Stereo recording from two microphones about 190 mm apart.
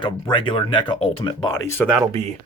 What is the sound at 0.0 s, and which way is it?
Speech, 25° left (ahead or behind).